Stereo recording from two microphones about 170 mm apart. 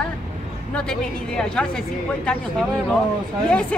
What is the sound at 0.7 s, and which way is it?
Speech, 5° left (ahead or behind).